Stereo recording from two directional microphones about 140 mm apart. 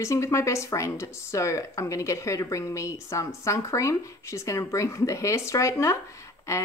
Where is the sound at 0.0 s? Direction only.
20° left (ahead or behind).